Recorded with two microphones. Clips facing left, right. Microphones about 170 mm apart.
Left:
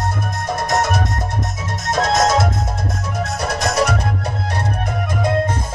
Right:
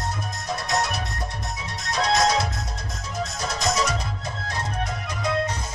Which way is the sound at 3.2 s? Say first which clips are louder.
Left 5 dB; 60° left (ahead or behind).